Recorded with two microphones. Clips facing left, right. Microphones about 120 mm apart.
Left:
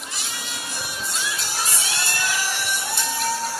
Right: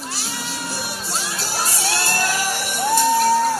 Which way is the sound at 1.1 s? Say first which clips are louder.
Right 3 dB; 35° right (ahead or behind).